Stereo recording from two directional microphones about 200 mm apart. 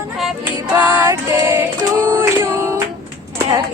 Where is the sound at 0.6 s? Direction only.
15° right (ahead or behind).